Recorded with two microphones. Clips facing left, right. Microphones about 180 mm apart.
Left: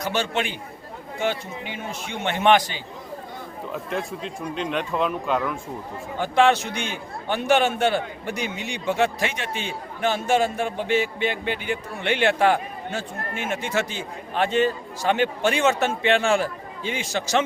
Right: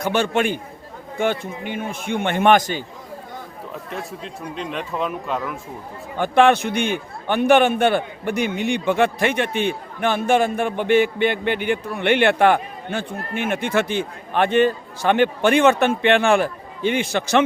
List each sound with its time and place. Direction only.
0.0 s a man's voice: 55° right (ahead or behind)
3.7 s speech: centre (ahead or behind)
6.1 s a man's voice: 55° right (ahead or behind)